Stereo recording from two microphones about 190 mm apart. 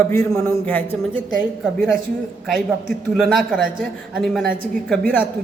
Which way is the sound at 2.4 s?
Centre (ahead or behind).